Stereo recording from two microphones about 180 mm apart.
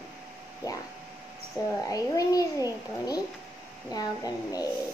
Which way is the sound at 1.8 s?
20° left (ahead or behind).